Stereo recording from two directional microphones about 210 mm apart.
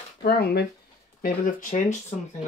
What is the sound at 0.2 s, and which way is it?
Speech, 50° left (ahead or behind).